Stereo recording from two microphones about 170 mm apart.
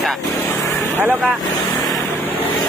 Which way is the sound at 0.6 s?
15° left (ahead or behind).